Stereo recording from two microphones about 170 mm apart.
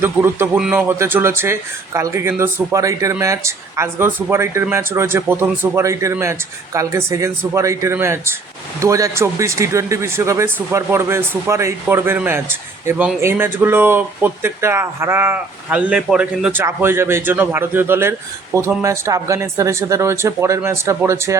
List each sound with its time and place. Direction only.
0.0 s speech: 15° right (ahead or behind)